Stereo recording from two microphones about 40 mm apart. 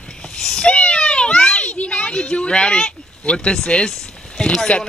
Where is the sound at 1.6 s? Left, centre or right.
Left.